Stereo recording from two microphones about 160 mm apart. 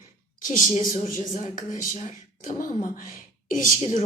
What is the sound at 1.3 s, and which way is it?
A woman's voice, 55° left (ahead or behind).